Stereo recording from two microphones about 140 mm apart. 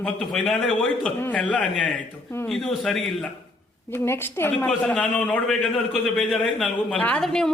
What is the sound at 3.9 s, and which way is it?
A man's voice, 15° left (ahead or behind).